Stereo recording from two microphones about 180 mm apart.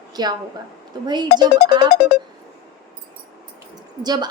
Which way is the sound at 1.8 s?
60° left (ahead or behind).